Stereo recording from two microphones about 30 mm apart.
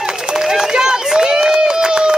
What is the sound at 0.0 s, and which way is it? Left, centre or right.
Run, right.